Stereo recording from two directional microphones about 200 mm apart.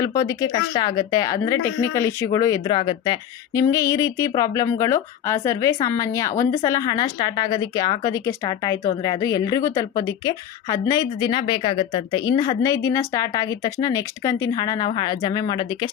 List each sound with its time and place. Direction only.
0.0 s a woman's voice: 15° left (ahead or behind)